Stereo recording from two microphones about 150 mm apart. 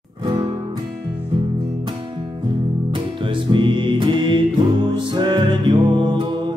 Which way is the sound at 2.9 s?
30° right (ahead or behind).